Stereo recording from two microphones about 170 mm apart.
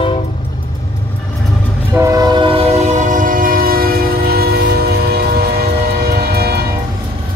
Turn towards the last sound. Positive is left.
turn(degrees=-65)  # may be behind; listen again after turning